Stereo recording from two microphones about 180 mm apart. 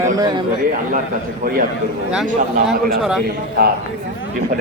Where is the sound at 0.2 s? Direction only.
20° right (ahead or behind).